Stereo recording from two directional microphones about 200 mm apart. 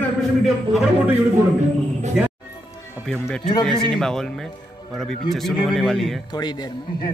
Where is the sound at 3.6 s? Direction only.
5° left (ahead or behind).